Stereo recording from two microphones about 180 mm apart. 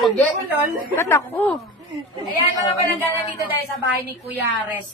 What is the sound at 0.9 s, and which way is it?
Speech, 10° left (ahead or behind).